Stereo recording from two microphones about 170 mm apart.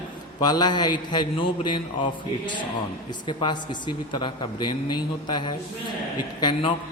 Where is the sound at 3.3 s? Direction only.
25° left (ahead or behind).